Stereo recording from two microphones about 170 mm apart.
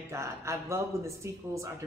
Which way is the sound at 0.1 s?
15° right (ahead or behind).